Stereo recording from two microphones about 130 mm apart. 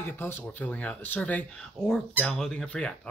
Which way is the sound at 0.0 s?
15° left (ahead or behind).